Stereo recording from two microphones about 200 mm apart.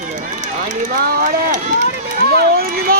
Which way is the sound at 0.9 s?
45° right (ahead or behind).